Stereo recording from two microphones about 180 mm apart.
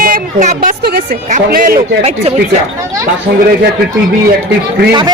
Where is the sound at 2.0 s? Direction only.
35° right (ahead or behind).